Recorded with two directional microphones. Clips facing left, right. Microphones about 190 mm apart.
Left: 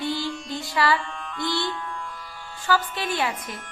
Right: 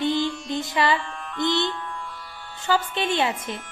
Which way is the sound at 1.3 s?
20° right (ahead or behind).